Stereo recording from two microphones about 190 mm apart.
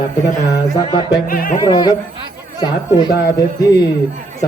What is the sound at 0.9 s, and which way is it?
Speech, 25° left (ahead or behind).